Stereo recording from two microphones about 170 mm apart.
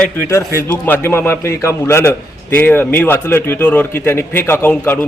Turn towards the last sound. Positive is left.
turn(degrees=10)  # may be behind; listen again after turning